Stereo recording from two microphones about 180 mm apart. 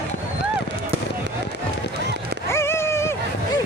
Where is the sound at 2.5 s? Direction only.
15° left (ahead or behind).